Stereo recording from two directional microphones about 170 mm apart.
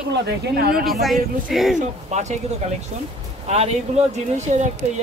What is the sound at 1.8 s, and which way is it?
Speech, 45° right (ahead or behind).